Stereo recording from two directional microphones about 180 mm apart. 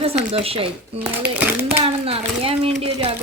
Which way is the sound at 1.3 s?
10° right (ahead or behind).